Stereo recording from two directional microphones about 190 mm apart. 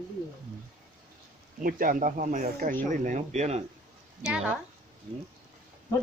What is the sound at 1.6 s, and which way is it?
Speech, 45° right (ahead or behind).